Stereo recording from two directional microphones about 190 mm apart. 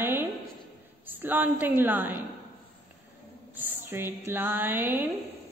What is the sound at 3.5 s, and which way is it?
A woman's voice, 10° right (ahead or behind).